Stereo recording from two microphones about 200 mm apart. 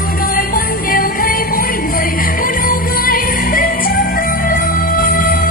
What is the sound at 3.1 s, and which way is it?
Music, 45° left (ahead or behind).